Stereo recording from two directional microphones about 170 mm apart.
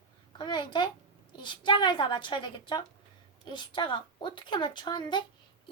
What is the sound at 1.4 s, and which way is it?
A woman's voice, 30° left (ahead or behind).